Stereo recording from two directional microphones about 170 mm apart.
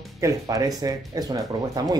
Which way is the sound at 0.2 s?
20° right (ahead or behind).